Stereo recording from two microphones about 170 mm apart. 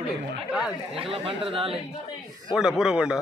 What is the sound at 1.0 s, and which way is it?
Speech, 30° right (ahead or behind).